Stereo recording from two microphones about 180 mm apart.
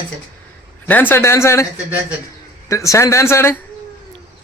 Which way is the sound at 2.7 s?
15° left (ahead or behind).